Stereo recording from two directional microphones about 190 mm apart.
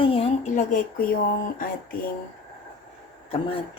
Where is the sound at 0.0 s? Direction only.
30° left (ahead or behind); by 2.0 s 50° left (ahead or behind).